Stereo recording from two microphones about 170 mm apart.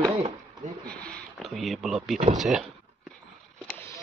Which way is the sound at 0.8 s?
5° left (ahead or behind).